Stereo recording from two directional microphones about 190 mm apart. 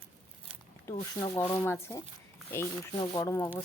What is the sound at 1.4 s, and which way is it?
Speech, 10° left (ahead or behind).